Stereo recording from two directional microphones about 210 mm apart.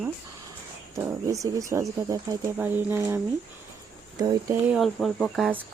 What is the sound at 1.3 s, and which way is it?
Speech, 15° right (ahead or behind).